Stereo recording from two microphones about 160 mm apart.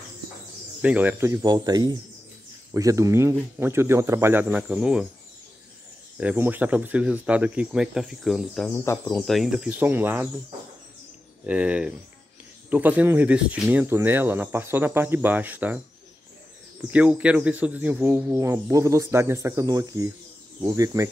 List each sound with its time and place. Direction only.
0.8 s speech: 10° right (ahead or behind)
6.1 s speech: 10° right (ahead or behind)
11.4 s speech: 10° right (ahead or behind)
16.8 s speech: 10° right (ahead or behind)